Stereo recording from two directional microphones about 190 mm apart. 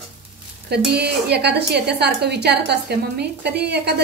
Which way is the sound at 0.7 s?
60° right (ahead or behind).